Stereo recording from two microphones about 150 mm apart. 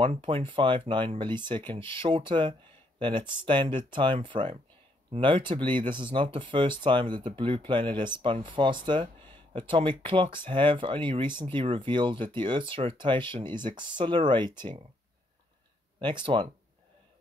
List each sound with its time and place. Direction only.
0.1 s speech: 35° right (ahead or behind)
16.0 s speech: 30° right (ahead or behind)